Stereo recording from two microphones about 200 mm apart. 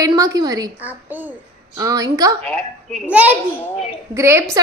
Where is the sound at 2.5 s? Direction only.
Centre (ahead or behind).